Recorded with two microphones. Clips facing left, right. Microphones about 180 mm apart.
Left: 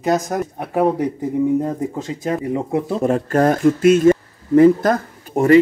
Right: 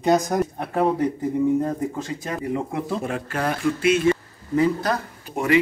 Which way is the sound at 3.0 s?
40° left (ahead or behind).